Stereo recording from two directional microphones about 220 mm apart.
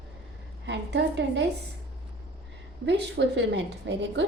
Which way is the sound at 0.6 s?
55° right (ahead or behind).